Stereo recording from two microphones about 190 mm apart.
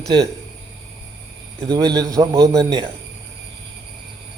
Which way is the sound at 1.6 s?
20° right (ahead or behind).